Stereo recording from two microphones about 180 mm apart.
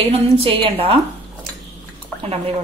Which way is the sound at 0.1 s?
30° right (ahead or behind).